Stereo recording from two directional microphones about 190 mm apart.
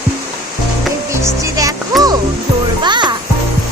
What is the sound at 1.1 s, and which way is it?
Music, 15° right (ahead or behind).